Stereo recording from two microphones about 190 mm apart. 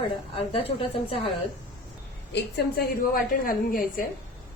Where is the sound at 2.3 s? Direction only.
55° left (ahead or behind).